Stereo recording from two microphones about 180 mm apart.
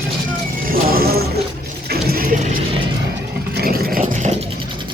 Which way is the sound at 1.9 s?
60° right (ahead or behind).